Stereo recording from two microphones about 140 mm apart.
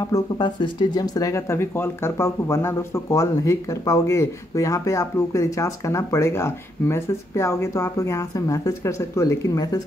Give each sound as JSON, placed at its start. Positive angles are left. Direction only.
{"t": 0.1, "sound": "speech", "side_deg": 30}